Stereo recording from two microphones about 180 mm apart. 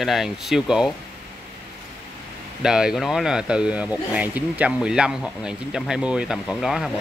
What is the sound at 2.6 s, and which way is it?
Speech, 5° right (ahead or behind).